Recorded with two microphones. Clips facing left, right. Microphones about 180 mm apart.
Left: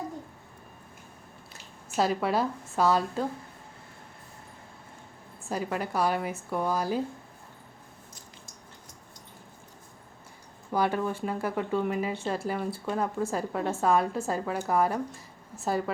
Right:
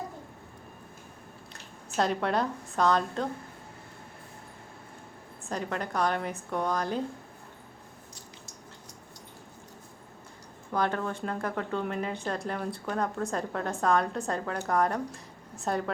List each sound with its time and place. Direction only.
2.0 s a woman's voice: 5° left (ahead or behind)
5.5 s speech: 5° left (ahead or behind)
10.7 s a woman's voice: 10° left (ahead or behind)